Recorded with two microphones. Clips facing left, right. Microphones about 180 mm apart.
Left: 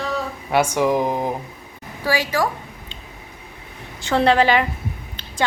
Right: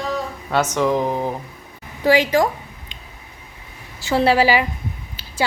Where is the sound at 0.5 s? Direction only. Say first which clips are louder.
Left 1 dB; 10° left (ahead or behind).